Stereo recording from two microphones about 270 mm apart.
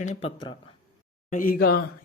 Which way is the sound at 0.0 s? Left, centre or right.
Left.